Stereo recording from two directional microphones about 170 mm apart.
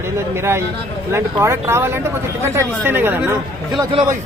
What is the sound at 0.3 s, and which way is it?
Speech, 15° right (ahead or behind).